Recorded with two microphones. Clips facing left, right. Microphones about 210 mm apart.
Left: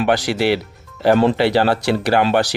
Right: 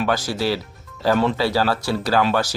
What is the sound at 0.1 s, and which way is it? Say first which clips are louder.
Speech: left 5 dB; 70° left (ahead or behind).